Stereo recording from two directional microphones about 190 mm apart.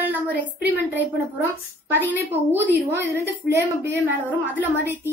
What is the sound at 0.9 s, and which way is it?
A woman's voice, 10° right (ahead or behind).